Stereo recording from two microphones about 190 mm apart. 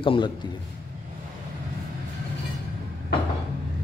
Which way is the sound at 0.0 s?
25° left (ahead or behind).